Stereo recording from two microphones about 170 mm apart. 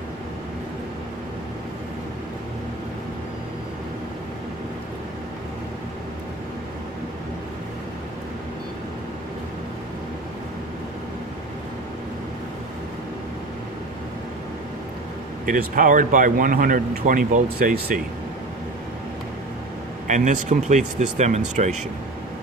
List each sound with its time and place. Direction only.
15.4 s speech: 55° right (ahead or behind)
20.1 s speech: 45° right (ahead or behind)